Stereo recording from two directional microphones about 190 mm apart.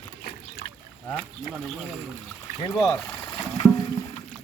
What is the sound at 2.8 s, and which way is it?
Speech, 5° left (ahead or behind).